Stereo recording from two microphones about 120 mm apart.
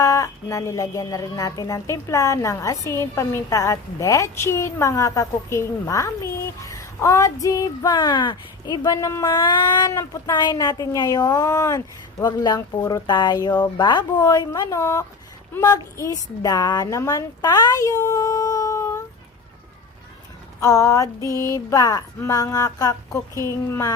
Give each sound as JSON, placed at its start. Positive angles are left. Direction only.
{"t": 0.0, "sound": "a woman's voice", "side_deg": 25}
{"t": 20.6, "sound": "speech", "side_deg": 30}